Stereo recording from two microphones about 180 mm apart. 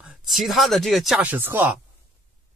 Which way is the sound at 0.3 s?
Centre (ahead or behind).